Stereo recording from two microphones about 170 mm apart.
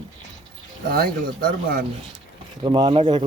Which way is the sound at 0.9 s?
60° right (ahead or behind).